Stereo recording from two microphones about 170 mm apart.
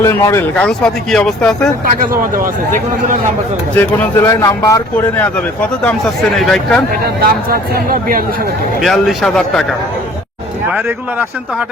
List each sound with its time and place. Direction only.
0.0 s speech: 15° left (ahead or behind)
1.9 s a man's voice: 50° right (ahead or behind)
3.8 s a man's voice: 15° left (ahead or behind)
6.3 s speech: centre (ahead or behind)
7.0 s speech: 60° right (ahead or behind)
8.8 s speech: centre (ahead or behind)
10.7 s speech: 10° right (ahead or behind)